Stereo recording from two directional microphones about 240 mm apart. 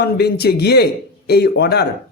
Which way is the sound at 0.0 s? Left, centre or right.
Left.